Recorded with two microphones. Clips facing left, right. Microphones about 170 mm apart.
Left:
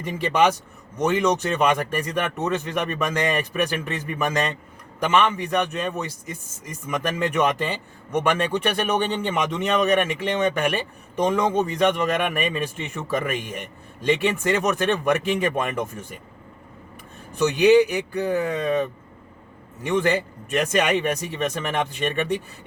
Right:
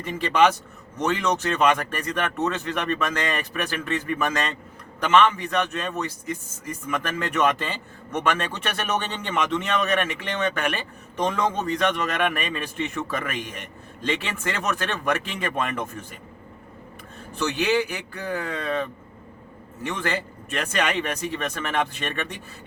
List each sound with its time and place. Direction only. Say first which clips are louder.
0.0 s a man's voice: even; 15° left (ahead or behind)
17.6 s a man's voice: left 9 dB; 15° left (ahead or behind)